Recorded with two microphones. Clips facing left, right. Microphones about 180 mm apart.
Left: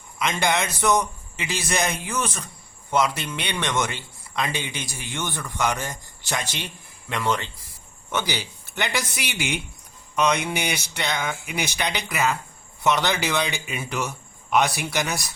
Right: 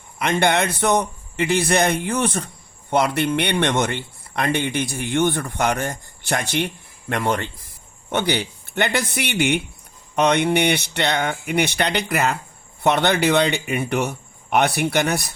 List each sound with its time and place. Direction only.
0.2 s a man's voice: 60° right (ahead or behind)